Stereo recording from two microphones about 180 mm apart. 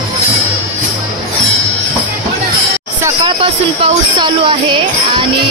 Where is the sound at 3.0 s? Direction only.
30° right (ahead or behind).